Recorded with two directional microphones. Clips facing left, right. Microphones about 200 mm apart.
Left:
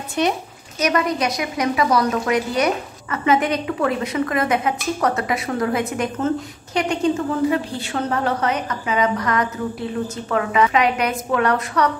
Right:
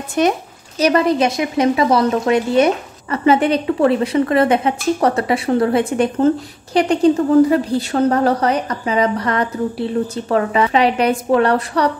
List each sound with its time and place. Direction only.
0.2 s speech: 50° right (ahead or behind)
0.7 s a woman's voice: 30° right (ahead or behind)